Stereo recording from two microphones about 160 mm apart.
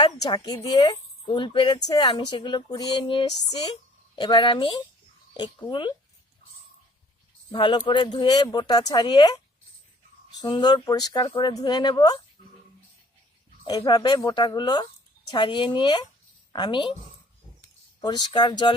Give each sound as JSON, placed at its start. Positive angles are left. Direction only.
{"t": 0.0, "sound": "speech", "side_deg": 25}
{"t": 7.5, "sound": "speech", "side_deg": 30}
{"t": 10.4, "sound": "speech", "side_deg": 25}
{"t": 13.7, "sound": "a woman's voice", "side_deg": 25}
{"t": 18.0, "sound": "speech", "side_deg": 25}